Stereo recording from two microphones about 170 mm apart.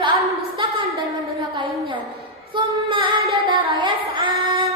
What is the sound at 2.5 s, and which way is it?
A woman's voice, 30° right (ahead or behind).